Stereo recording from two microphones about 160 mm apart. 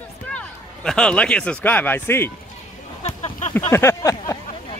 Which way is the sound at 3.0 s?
45° left (ahead or behind).